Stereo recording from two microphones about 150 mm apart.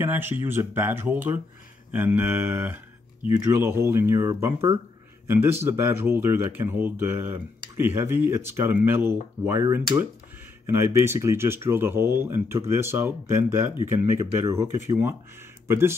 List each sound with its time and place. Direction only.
0.0 s speech: 15° right (ahead or behind)